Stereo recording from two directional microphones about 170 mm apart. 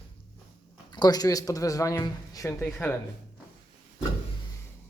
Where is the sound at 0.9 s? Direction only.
25° left (ahead or behind).